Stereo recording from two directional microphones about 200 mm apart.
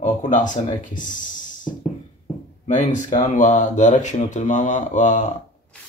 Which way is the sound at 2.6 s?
40° left (ahead or behind).